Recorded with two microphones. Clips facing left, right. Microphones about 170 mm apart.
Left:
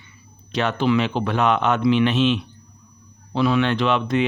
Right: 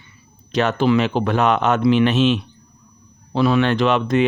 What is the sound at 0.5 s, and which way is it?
A man's voice, 45° right (ahead or behind).